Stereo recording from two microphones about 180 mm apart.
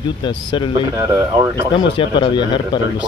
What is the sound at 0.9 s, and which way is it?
Speech, 20° right (ahead or behind).